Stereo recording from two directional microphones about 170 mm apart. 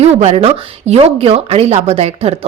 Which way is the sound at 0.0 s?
40° right (ahead or behind).